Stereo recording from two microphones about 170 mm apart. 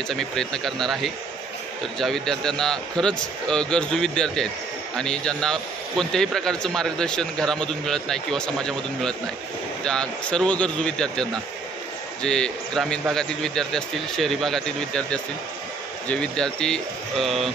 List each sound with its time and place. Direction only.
0.1 s a man's voice: 5° left (ahead or behind)